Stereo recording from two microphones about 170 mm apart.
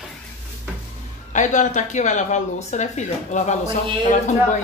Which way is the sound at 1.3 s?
45° left (ahead or behind).